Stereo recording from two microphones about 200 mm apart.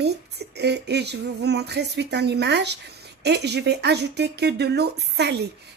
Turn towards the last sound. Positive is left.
turn(degrees=-55)  # may be behind; listen again after turning